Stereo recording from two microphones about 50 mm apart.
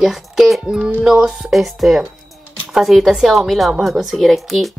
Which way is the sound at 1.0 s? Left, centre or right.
Centre.